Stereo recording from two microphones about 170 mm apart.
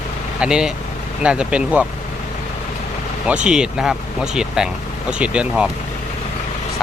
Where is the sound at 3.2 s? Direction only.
5° right (ahead or behind).